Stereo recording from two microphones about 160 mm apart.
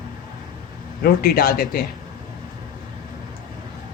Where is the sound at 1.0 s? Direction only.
70° left (ahead or behind).